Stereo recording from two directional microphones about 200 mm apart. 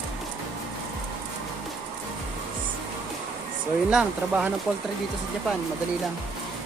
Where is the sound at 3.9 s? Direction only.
5° right (ahead or behind).